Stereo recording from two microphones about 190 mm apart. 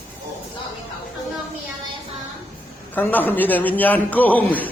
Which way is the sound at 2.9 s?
10° left (ahead or behind).